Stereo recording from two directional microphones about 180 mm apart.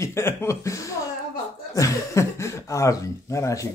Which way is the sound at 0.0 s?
15° left (ahead or behind).